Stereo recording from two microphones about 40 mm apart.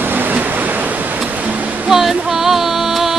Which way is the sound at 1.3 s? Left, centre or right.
Right.